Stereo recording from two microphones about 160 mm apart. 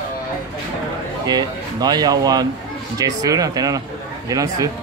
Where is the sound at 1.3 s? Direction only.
25° right (ahead or behind).